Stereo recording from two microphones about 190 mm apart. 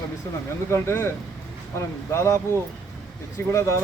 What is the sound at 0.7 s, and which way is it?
Speech, 15° left (ahead or behind).